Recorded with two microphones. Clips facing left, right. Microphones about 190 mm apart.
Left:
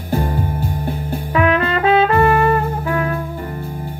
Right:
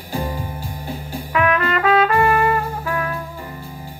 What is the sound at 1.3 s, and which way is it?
Trumpet, 30° left (ahead or behind).